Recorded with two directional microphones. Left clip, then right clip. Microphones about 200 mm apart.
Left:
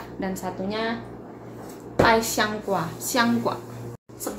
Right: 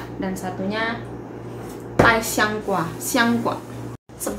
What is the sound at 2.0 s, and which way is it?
A woman's voice, 15° left (ahead or behind).